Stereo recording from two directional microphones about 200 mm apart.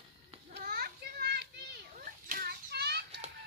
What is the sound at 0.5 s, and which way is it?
Children playing, 50° right (ahead or behind).